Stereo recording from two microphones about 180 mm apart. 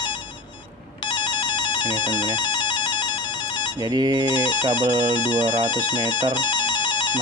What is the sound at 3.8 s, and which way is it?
Speech, 20° right (ahead or behind).